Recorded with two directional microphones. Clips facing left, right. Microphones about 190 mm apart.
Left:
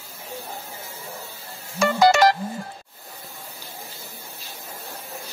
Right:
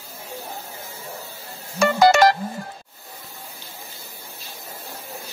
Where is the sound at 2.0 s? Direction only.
50° right (ahead or behind).